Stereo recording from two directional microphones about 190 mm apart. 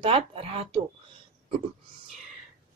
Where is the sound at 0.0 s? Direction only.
30° right (ahead or behind).